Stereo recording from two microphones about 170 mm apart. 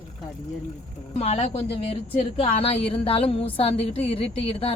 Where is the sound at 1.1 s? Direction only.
35° left (ahead or behind).